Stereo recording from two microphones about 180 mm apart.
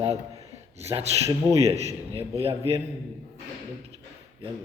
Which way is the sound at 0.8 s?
35° right (ahead or behind).